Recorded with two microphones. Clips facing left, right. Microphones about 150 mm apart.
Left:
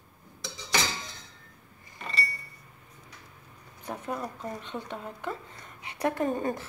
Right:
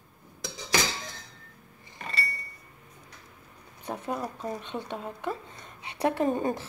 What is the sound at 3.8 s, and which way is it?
A woman's voice, 20° right (ahead or behind).